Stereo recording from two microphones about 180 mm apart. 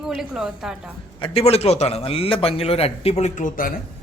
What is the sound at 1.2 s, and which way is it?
A man's voice, 35° left (ahead or behind).